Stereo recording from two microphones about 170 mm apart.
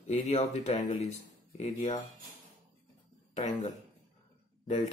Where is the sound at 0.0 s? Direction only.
45° left (ahead or behind).